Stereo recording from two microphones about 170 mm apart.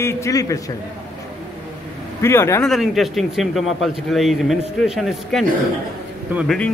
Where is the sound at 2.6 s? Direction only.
Centre (ahead or behind).